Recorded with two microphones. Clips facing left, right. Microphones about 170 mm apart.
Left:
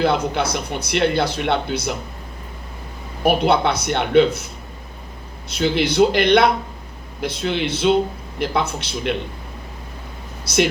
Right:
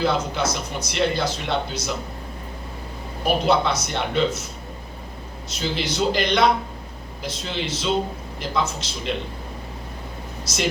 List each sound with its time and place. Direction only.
0.0 s speech: 60° left (ahead or behind)
3.2 s speech: 60° left (ahead or behind)
5.5 s speech: 60° left (ahead or behind)
10.4 s speech: 60° left (ahead or behind)